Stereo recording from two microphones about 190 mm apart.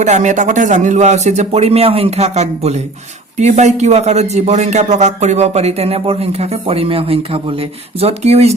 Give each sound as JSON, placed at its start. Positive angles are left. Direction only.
{"t": 0.0, "sound": "a man's voice", "side_deg": -40}